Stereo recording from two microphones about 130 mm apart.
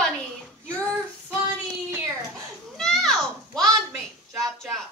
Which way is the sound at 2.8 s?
5° left (ahead or behind).